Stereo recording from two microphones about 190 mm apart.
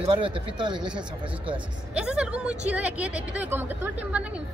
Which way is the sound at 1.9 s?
5° right (ahead or behind).